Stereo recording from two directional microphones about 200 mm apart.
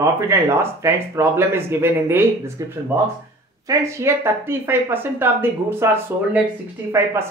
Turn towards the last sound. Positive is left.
turn(degrees=-15)  # may be behind; listen again after turning